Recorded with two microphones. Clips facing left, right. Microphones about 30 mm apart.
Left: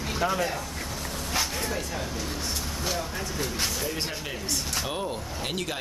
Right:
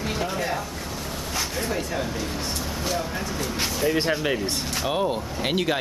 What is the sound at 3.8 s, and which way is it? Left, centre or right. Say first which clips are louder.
Speech: right 9 dB; centre.